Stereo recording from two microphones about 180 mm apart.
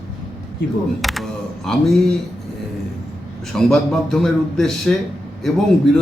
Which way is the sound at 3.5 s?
5° left (ahead or behind).